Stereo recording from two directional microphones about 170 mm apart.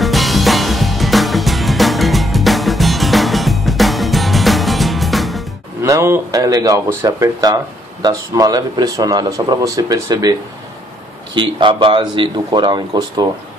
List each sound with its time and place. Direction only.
0.0 s music: centre (ahead or behind)
5.8 s speech: 15° right (ahead or behind)
11.3 s speech: 30° right (ahead or behind)